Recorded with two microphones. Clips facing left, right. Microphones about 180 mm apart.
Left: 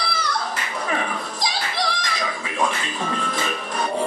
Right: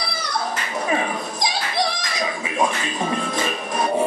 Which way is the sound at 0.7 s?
20° right (ahead or behind).